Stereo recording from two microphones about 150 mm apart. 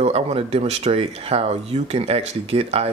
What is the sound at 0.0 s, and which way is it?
Speech, 40° right (ahead or behind).